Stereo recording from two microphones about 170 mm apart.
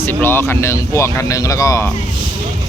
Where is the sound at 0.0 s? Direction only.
10° left (ahead or behind).